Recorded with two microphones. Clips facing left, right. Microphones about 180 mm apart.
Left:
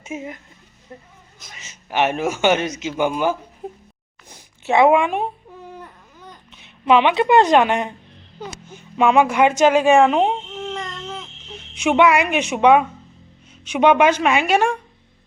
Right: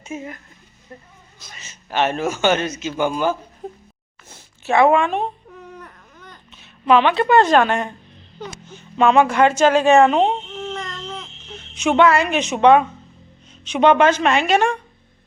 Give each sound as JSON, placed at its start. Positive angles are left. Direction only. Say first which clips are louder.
{"t": 0.0, "sound": "speech", "louder": "left 1 dB", "side_deg": 20}
{"t": 1.5, "sound": "a man's voice", "louder": "even", "side_deg": 15}
{"t": 11.7, "sound": "a man's voice", "louder": "even", "side_deg": 10}